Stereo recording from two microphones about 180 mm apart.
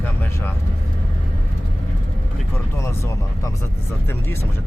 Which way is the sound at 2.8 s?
15° left (ahead or behind).